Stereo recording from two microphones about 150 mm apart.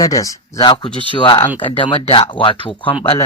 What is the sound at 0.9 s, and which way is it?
Speech, 35° right (ahead or behind).